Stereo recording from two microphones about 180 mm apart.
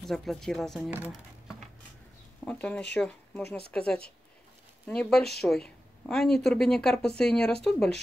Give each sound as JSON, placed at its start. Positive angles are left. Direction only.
{"t": 0.0, "sound": "a woman's voice", "side_deg": 0}
{"t": 0.9, "sound": "a sound", "side_deg": -10}
{"t": 2.4, "sound": "speech", "side_deg": 5}
{"t": 3.4, "sound": "speech", "side_deg": 60}
{"t": 3.7, "sound": "a woman's voice", "side_deg": 5}